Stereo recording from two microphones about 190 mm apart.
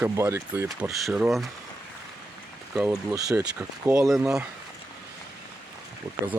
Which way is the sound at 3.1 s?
20° right (ahead or behind).